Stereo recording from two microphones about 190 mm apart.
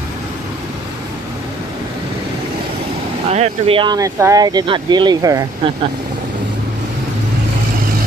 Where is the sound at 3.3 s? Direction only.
30° right (ahead or behind).